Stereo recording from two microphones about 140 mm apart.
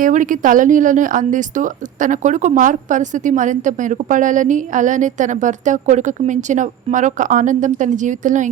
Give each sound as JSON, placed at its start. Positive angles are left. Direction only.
{"t": 0.0, "sound": "a woman's voice", "side_deg": -70}